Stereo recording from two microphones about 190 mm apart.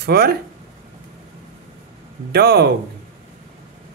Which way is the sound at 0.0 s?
55° right (ahead or behind).